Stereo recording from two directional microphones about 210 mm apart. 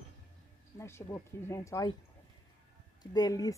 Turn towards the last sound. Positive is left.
turn(degrees=15)  # may be behind; listen again after turning